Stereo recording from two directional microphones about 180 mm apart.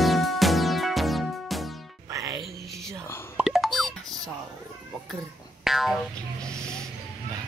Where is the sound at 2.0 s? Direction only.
20° right (ahead or behind).